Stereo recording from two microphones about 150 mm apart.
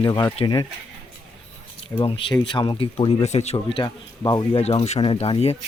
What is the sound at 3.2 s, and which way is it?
Speech, 45° left (ahead or behind).